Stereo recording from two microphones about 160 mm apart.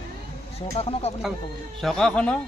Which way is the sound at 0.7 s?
40° left (ahead or behind).